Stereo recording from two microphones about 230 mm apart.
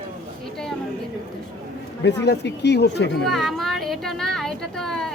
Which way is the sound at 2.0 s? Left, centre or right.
Left.